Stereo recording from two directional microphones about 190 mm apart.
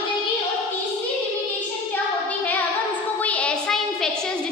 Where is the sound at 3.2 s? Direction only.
5° left (ahead or behind).